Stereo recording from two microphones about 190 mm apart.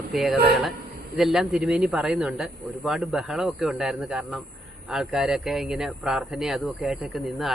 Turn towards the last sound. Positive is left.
turn(degrees=0)  # may be behind; listen again after turning